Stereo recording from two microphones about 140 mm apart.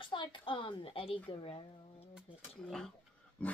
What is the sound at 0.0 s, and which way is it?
A woman's voice, 35° left (ahead or behind).